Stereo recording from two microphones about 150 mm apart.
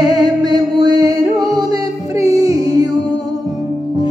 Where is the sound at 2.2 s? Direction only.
40° left (ahead or behind).